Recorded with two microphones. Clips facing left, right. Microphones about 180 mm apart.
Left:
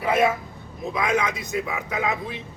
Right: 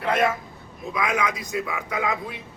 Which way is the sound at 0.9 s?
25° left (ahead or behind).